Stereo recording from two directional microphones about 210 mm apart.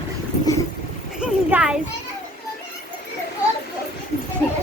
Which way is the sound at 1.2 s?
5° right (ahead or behind).